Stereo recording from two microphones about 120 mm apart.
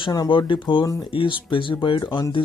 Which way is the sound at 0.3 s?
40° left (ahead or behind).